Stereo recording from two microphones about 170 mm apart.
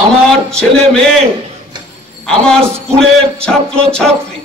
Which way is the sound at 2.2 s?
5° left (ahead or behind).